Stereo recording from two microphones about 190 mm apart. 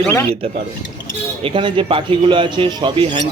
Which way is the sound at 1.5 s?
25° right (ahead or behind).